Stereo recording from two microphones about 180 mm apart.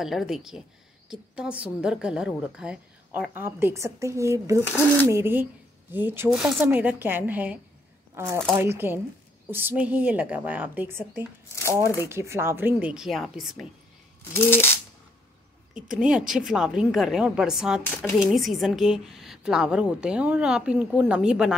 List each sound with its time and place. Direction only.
0.0 s a woman's voice: centre (ahead or behind)
11.8 s speech: 15° left (ahead or behind)
12.1 s a woman's voice: 15° right (ahead or behind)
14.3 s speech: 10° left (ahead or behind)
15.9 s a woman's voice: 5° right (ahead or behind)